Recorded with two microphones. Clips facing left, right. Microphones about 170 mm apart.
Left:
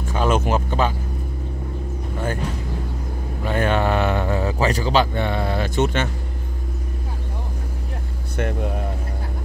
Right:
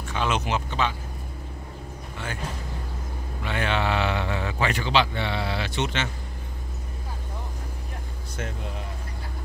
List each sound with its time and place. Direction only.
0.1 s speech: 45° left (ahead or behind)
3.4 s speech: 45° left (ahead or behind)
8.4 s speech: 65° left (ahead or behind)